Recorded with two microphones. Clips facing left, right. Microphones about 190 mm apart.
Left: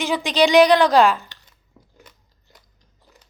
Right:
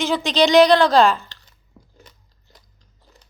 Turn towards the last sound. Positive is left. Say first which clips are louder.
# even
turn(degrees=20)  # may be behind; listen again after turning